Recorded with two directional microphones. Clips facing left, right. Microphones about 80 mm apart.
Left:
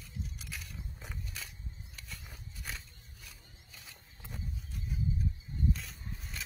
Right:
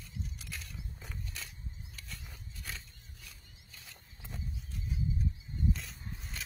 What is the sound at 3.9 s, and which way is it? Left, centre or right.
Wild animals, centre.